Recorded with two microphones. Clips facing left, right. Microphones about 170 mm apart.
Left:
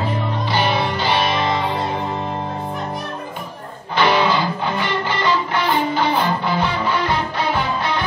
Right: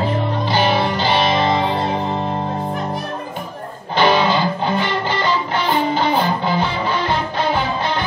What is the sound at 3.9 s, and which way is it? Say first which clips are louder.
Music: right 2 dB; 25° right (ahead or behind).